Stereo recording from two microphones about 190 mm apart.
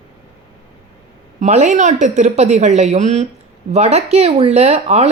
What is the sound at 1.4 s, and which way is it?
Speech, 40° right (ahead or behind).